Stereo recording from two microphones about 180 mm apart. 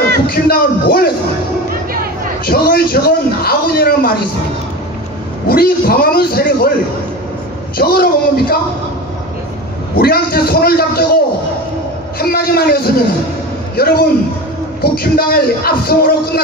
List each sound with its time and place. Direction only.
0.3 s a man's voice: 60° left (ahead or behind)
2.4 s a man's voice: 55° left (ahead or behind)
5.5 s a man's voice: 55° left (ahead or behind)
7.7 s a man's voice: 55° left (ahead or behind)
9.9 s a man's voice: 60° left (ahead or behind)
12.2 s a man's voice: 60° left (ahead or behind)